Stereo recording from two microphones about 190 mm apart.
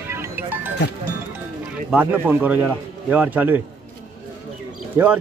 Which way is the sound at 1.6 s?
10° right (ahead or behind).